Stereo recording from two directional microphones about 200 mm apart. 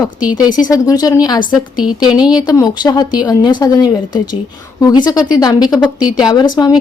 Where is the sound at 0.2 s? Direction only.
5° right (ahead or behind).